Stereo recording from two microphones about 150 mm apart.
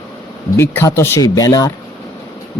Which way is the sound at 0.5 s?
15° left (ahead or behind).